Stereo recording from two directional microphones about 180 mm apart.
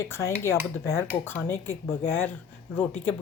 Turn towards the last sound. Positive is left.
turn(degrees=10)  # may be behind; listen again after turning